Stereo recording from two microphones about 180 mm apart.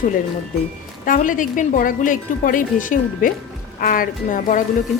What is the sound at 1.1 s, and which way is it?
A woman's voice, 45° left (ahead or behind).